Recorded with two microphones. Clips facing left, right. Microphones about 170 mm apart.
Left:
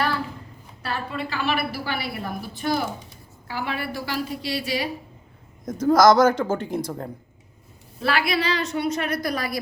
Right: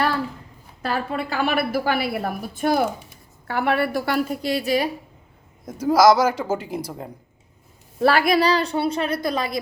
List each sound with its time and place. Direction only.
1.1 s a woman's voice: 50° right (ahead or behind)
5.6 s speech: 10° right (ahead or behind)
8.1 s a woman's voice: 40° right (ahead or behind); by 9.6 s 25° right (ahead or behind)